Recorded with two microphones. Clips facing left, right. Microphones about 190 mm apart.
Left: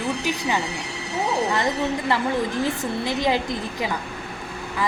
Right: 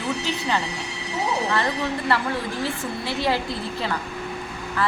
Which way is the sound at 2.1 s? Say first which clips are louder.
Left 2 dB; 15° left (ahead or behind).